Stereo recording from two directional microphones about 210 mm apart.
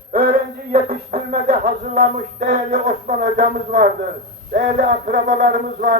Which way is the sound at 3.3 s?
35° right (ahead or behind).